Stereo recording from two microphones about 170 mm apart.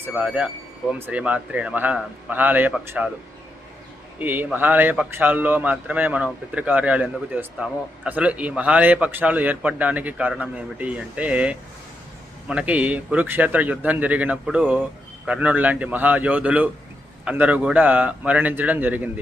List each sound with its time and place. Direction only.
0.0 s a man's voice: 10° right (ahead or behind)
4.2 s a man's voice: 10° right (ahead or behind)